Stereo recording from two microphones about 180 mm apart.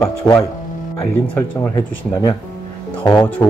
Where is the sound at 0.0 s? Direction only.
15° left (ahead or behind).